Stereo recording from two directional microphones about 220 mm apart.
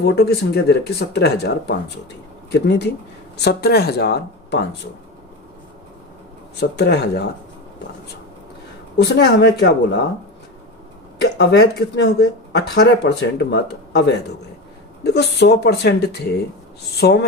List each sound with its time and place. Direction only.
0.0 s speech: 50° left (ahead or behind)
6.6 s speech: 50° left (ahead or behind)
9.0 s speech: 50° left (ahead or behind)
11.2 s speech: 50° left (ahead or behind)